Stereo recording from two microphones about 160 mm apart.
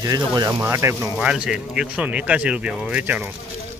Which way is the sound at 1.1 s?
5° right (ahead or behind).